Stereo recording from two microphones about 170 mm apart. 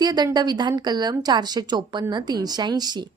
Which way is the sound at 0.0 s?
25° right (ahead or behind).